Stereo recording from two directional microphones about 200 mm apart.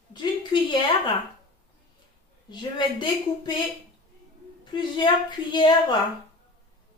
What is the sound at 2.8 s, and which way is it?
Speech, 25° left (ahead or behind).